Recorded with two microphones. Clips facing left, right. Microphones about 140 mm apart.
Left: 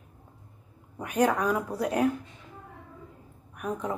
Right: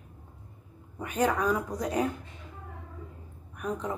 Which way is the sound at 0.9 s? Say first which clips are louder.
Left 2 dB; 10° left (ahead or behind).